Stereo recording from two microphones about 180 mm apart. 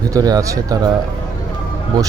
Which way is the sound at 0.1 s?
20° right (ahead or behind).